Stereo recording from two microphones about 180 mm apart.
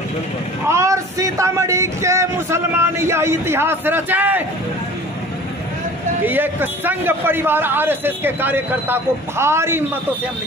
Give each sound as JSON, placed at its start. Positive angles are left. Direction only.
{"t": 0.7, "sound": "speech", "side_deg": -15}
{"t": 6.2, "sound": "speech", "side_deg": -10}